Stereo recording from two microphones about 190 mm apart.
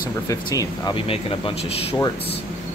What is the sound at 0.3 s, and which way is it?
Speech, 20° left (ahead or behind).